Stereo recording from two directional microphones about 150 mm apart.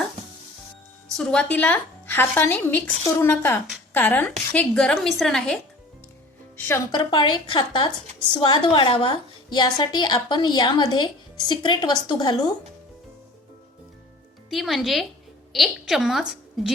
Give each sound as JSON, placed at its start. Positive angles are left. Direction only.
{"t": 1.0, "sound": "a woman's voice", "side_deg": 5}
{"t": 6.9, "sound": "a woman's voice", "side_deg": 30}
{"t": 14.5, "sound": "a woman's voice", "side_deg": 0}